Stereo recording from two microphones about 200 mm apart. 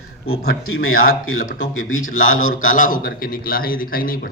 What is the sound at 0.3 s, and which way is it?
Speech, 90° left.